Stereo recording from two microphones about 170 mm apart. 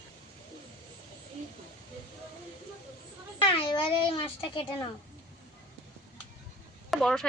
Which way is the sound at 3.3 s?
30° left (ahead or behind).